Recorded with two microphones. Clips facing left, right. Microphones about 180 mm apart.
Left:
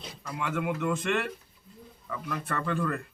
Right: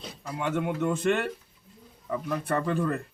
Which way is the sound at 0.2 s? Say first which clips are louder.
Right 3 dB; 30° right (ahead or behind).